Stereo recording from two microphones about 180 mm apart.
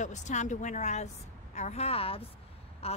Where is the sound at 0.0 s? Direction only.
40° left (ahead or behind).